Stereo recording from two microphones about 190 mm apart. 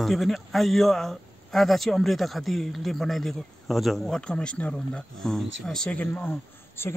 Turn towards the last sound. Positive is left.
turn(degrees=10)  # may be behind; listen again after turning